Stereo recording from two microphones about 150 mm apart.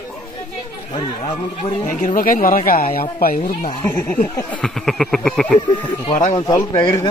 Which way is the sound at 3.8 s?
15° left (ahead or behind).